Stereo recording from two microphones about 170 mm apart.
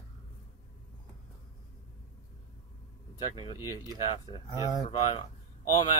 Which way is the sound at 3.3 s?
30° left (ahead or behind).